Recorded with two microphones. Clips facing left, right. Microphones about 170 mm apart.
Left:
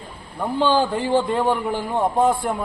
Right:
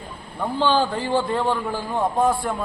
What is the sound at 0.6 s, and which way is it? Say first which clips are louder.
A man's voice: left 2 dB; 15° left (ahead or behind).